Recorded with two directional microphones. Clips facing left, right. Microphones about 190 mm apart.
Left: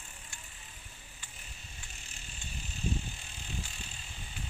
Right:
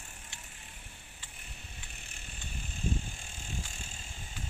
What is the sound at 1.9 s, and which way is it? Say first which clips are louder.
Bicycle: right 2 dB; 55° right (ahead or behind).